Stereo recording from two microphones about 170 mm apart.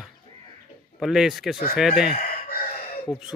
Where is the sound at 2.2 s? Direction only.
60° left (ahead or behind).